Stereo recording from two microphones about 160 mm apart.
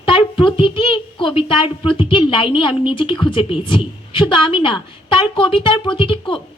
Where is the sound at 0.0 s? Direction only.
35° left (ahead or behind).